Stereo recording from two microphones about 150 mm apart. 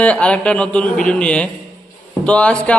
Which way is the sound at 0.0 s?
10° left (ahead or behind).